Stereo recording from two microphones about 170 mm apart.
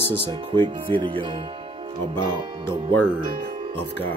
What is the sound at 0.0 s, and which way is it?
Speech, 30° right (ahead or behind).